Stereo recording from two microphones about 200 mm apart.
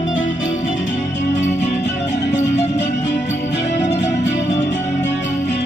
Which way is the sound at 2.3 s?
60° left (ahead or behind).